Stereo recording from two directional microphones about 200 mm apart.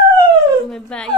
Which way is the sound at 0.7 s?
5° left (ahead or behind).